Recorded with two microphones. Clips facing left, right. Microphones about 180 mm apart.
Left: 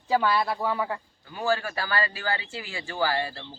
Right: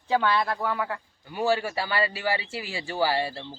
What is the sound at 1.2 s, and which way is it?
Speech, 25° right (ahead or behind).